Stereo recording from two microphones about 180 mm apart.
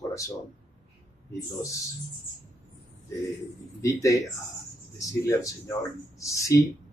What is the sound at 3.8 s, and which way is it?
A man's voice, 15° left (ahead or behind).